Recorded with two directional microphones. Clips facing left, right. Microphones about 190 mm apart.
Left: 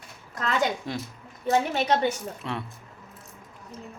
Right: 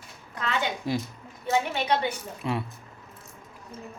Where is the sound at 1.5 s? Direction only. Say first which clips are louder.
Left 2 dB; 40° left (ahead or behind).